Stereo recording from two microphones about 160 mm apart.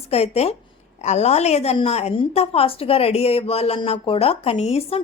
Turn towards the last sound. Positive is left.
turn(degrees=40)  # may be behind; listen again after turning